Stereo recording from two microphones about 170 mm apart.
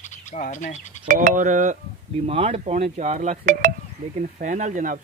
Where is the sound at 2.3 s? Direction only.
35° right (ahead or behind).